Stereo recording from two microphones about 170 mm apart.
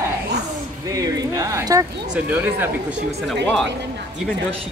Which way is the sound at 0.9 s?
20° right (ahead or behind).